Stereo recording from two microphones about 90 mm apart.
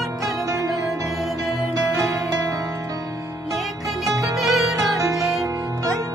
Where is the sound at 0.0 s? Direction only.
Centre (ahead or behind).